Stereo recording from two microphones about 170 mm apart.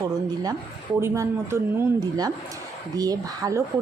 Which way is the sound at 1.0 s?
15° right (ahead or behind).